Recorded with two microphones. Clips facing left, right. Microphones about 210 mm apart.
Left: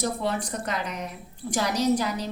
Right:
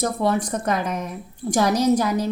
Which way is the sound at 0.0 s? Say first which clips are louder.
Right 6 dB; 50° right (ahead or behind).